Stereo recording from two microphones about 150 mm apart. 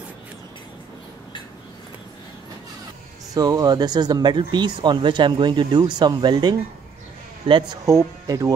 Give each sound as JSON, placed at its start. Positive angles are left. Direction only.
{"t": 3.3, "sound": "speech", "side_deg": -25}
{"t": 7.8, "sound": "speech", "side_deg": -20}